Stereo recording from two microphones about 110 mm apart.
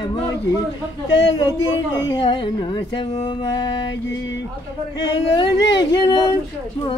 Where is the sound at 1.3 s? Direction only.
40° left (ahead or behind).